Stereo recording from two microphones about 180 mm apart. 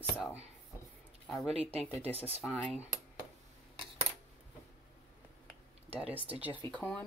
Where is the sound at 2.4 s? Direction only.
Centre (ahead or behind).